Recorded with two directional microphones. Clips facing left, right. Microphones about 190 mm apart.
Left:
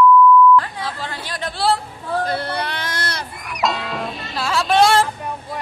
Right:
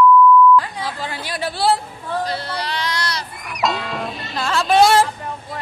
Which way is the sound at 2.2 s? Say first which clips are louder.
Left 3 dB; 55° left (ahead or behind).